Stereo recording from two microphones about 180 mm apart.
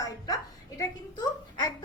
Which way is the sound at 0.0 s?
20° left (ahead or behind).